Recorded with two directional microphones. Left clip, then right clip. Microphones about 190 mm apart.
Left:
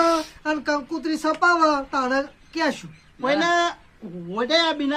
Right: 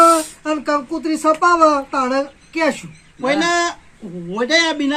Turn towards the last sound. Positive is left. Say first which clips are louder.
# right 5 dB
turn(degrees=5)  # may be behind; listen again after turning